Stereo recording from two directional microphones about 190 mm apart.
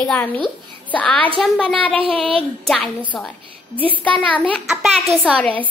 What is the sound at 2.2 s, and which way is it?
Speech, 30° right (ahead or behind).